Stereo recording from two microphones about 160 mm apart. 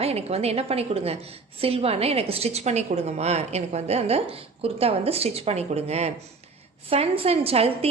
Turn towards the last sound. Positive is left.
turn(degrees=-40)  # may be behind; listen again after turning